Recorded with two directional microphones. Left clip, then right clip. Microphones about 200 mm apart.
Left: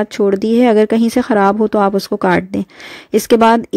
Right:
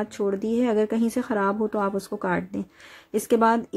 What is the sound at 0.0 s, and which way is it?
Speech, 35° left (ahead or behind).